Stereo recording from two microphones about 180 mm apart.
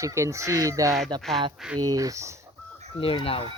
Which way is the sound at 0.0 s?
15° right (ahead or behind).